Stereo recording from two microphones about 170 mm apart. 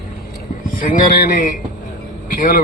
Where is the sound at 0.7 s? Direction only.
50° left (ahead or behind).